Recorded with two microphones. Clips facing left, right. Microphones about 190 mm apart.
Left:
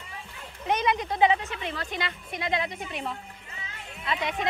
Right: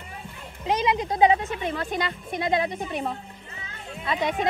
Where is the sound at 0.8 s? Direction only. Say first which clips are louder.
Right 3 dB; 30° right (ahead or behind).